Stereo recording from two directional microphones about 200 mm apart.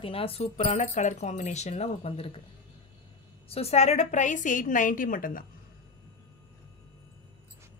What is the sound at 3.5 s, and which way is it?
A woman's voice, 30° left (ahead or behind).